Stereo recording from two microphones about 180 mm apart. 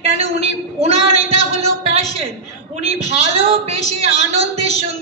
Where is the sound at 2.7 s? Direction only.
35° right (ahead or behind).